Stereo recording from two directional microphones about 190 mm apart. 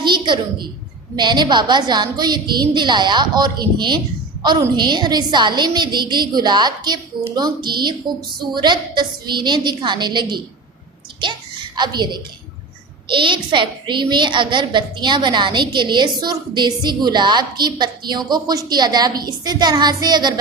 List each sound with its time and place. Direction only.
0.0 s a woman's voice: 25° right (ahead or behind)
11.8 s a woman's voice: 25° right (ahead or behind)